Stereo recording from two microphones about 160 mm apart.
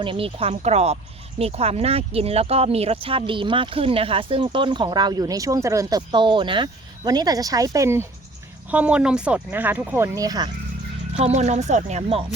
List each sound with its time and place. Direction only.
0.0 s speech: 35° right (ahead or behind)
11.2 s speech: 45° right (ahead or behind)